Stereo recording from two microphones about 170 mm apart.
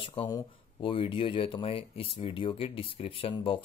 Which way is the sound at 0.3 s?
25° left (ahead or behind).